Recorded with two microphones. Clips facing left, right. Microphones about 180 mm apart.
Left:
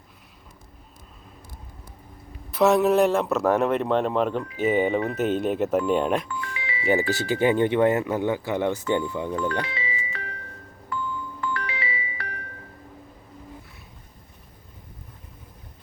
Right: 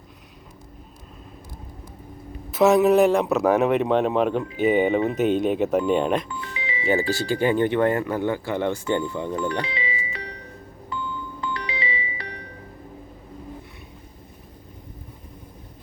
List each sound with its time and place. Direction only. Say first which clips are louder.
2.5 s speech: right 2 dB; centre (ahead or behind)
6.4 s music: right 2 dB; 20° right (ahead or behind)
7.1 s speech: even; 20° left (ahead or behind)
9.3 s music: right 1 dB; 15° right (ahead or behind)